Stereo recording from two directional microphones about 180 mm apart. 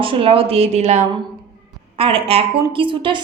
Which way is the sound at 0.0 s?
30° right (ahead or behind).